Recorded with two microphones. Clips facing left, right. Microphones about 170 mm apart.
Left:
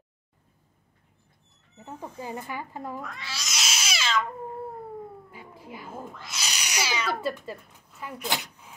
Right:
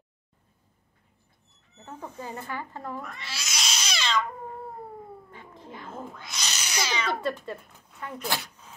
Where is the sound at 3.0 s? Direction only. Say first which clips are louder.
Left 1 dB; centre (ahead or behind).